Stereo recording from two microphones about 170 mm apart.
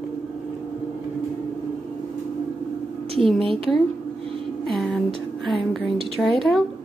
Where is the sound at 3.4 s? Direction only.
30° right (ahead or behind).